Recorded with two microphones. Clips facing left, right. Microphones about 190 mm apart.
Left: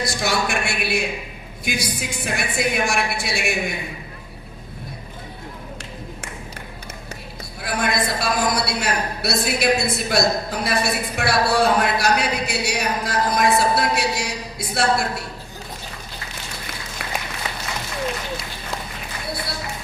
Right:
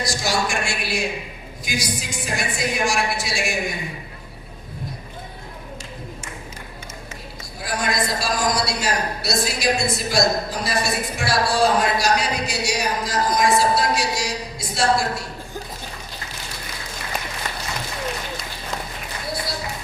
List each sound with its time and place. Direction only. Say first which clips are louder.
0.0 s a woman's voice: left 1 dB; 60° left (ahead or behind)
7.6 s a woman's voice: left 1 dB; 60° left (ahead or behind)
17.5 s applause: even; 5° left (ahead or behind)